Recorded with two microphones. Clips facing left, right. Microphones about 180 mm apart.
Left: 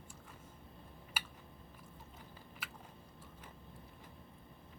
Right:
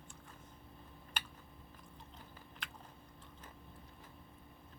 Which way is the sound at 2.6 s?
5° left (ahead or behind).